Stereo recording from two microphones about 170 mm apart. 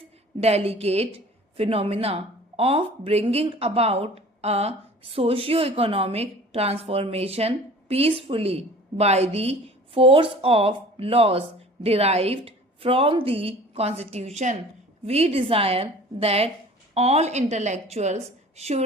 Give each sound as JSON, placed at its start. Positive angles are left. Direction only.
{"t": 0.3, "sound": "a woman's voice", "side_deg": -35}